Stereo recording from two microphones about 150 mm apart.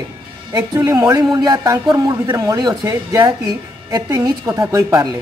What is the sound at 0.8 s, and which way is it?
A man's voice, 25° right (ahead or behind).